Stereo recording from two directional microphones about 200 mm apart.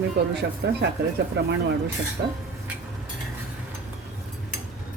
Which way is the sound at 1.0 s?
55° right (ahead or behind).